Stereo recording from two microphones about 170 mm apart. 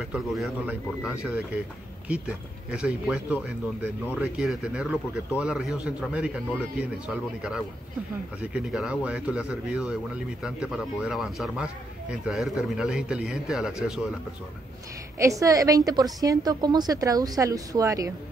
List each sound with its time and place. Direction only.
0.1 s speech: 5° right (ahead or behind)
8.4 s speech: 5° right (ahead or behind)
15.1 s a woman's voice: 20° right (ahead or behind)